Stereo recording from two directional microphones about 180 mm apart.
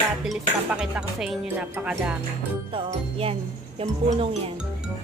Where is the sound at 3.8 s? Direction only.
35° right (ahead or behind).